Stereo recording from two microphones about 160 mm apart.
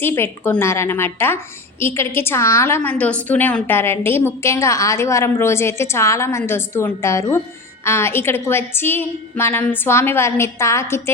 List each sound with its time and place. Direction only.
0.0 s a woman's voice: 15° left (ahead or behind)